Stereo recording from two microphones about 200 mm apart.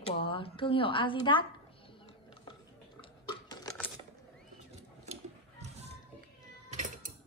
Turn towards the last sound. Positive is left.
turn(degrees=-40)  # may be behind; listen again after turning